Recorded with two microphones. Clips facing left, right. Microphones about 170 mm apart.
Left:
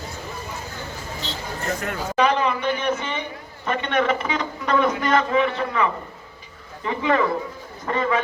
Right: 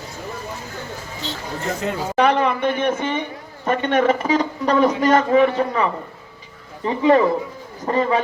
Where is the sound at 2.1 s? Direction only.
60° right (ahead or behind).